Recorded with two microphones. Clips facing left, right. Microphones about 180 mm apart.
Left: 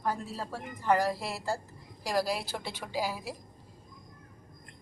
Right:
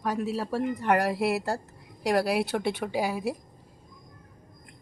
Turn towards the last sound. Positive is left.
turn(degrees=-60)  # may be behind; listen again after turning